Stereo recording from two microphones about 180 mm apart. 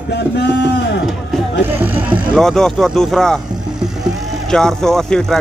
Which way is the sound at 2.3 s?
Centre (ahead or behind).